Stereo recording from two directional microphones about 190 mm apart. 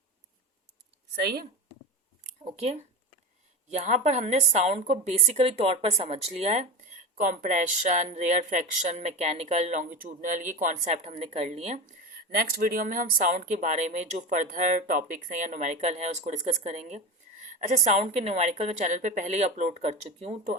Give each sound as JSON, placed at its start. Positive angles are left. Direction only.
{"t": 3.7, "sound": "a woman's voice", "side_deg": -35}
{"t": 12.3, "sound": "a woman's voice", "side_deg": -50}